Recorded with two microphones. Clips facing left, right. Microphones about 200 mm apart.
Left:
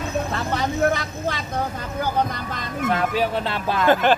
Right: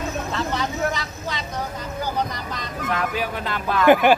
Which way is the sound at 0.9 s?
55° left (ahead or behind).